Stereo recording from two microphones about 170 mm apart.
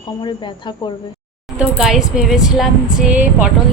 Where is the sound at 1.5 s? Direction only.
5° right (ahead or behind).